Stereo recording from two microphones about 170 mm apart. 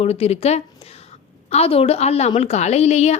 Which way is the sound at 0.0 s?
35° left (ahead or behind).